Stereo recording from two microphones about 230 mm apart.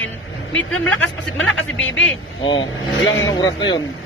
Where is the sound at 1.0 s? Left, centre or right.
Left.